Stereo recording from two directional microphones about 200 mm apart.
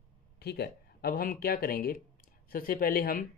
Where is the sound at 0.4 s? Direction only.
55° left (ahead or behind).